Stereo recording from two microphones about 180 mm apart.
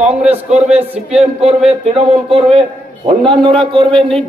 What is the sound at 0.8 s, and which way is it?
Speech, 10° right (ahead or behind).